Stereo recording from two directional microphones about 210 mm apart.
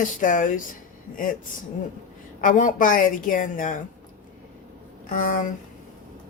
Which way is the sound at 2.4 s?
40° left (ahead or behind).